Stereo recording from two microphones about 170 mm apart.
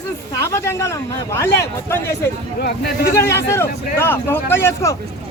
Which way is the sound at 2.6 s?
65° left (ahead or behind).